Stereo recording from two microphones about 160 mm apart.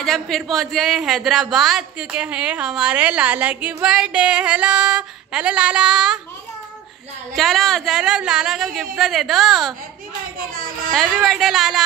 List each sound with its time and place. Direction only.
0.0 s speech: centre (ahead or behind)
7.3 s speech: centre (ahead or behind)
10.5 s a child's voice: 60° right (ahead or behind)
10.9 s speech: centre (ahead or behind)